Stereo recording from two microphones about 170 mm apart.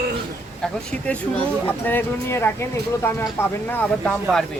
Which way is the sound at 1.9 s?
10° left (ahead or behind).